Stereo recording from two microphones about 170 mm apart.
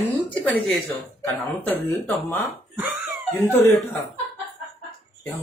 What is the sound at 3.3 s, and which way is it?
Speech, 10° left (ahead or behind).